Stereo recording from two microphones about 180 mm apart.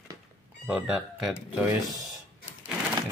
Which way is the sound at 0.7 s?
5° right (ahead or behind).